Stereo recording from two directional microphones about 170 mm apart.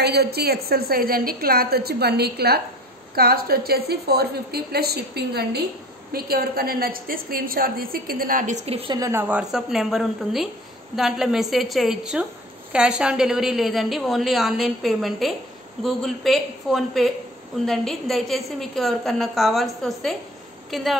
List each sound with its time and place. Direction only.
0.0 s a woman's voice: 70° right (ahead or behind); by 8.9 s 35° right (ahead or behind)
8.9 s speech: 20° right (ahead or behind)
9.3 s a woman's voice: 5° right (ahead or behind)